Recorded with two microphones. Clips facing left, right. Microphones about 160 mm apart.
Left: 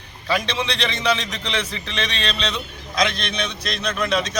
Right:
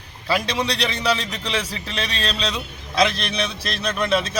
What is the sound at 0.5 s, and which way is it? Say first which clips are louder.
Speech: right 2 dB; 40° right (ahead or behind).